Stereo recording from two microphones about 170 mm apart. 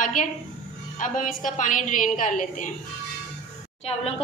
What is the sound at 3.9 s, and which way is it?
Speech, 35° left (ahead or behind).